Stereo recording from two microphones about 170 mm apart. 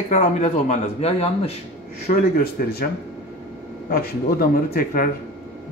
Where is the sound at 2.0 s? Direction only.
65° left (ahead or behind).